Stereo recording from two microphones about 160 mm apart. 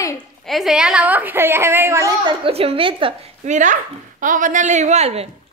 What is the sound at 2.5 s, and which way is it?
Speech, 35° right (ahead or behind).